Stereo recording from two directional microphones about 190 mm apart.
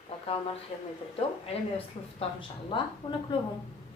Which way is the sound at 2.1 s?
25° left (ahead or behind).